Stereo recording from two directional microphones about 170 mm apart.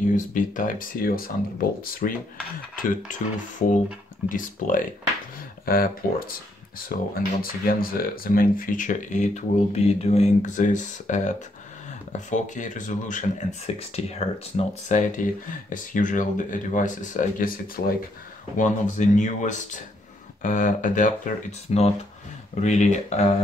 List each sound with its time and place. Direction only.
0.1 s speech: 50° left (ahead or behind)
18.6 s speech: 45° left (ahead or behind)